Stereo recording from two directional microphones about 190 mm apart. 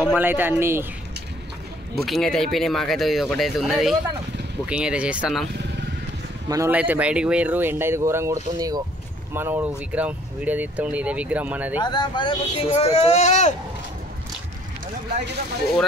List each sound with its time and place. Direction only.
0.1 s speech: 10° right (ahead or behind)
2.0 s speech: centre (ahead or behind)
6.5 s speech: 10° right (ahead or behind)
11.8 s speech: 20° left (ahead or behind); by 13.6 s 40° left (ahead or behind)